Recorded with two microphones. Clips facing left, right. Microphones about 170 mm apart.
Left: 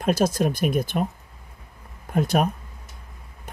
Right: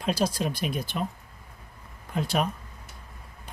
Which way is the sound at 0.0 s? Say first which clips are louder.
Left 5 dB; 50° left (ahead or behind).